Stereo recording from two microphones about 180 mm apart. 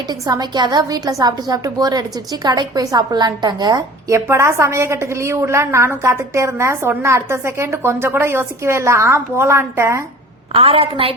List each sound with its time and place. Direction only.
0.1 s a woman's voice: 20° right (ahead or behind)
10.5 s a woman's voice: 30° right (ahead or behind)